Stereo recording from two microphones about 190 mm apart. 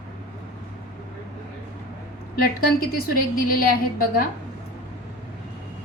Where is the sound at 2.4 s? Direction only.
50° left (ahead or behind).